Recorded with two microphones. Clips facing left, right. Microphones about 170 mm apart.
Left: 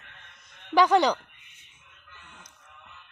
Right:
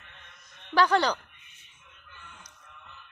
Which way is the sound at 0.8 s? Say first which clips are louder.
Left 3 dB; 15° left (ahead or behind).